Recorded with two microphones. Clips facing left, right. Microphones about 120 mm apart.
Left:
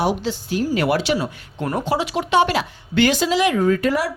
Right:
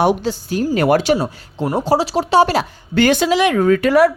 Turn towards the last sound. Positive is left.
turn(degrees=-70)  # may be behind; listen again after turning